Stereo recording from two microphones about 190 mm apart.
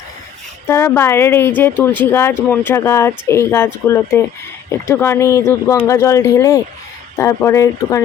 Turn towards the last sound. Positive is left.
turn(degrees=15)  # may be behind; listen again after turning